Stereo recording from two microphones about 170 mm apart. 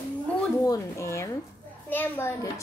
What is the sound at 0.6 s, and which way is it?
A woman's voice, 20° left (ahead or behind).